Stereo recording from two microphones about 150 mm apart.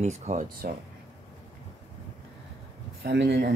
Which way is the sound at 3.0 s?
90° right.